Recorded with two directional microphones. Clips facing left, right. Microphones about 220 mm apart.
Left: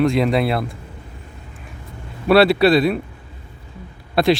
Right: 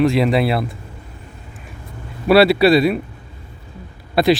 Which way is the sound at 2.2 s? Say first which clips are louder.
Right 1 dB; 5° right (ahead or behind).